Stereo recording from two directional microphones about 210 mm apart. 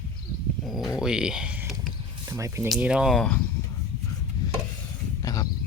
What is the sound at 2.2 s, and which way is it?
Speech, 15° right (ahead or behind).